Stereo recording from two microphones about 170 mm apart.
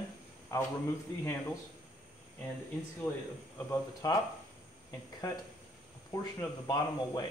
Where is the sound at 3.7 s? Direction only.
20° left (ahead or behind).